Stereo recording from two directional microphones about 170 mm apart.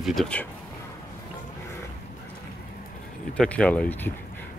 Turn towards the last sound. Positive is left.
turn(degrees=5)  # may be behind; listen again after turning